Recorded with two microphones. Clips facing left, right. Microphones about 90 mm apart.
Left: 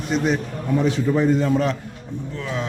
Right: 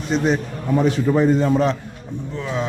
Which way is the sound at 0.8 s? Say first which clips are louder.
Right 3 dB; 45° right (ahead or behind).